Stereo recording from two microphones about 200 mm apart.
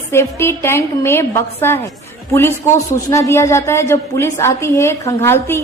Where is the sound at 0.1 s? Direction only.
15° left (ahead or behind).